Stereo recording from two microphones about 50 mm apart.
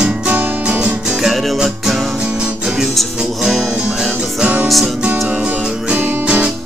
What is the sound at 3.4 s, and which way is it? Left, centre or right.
Music, centre.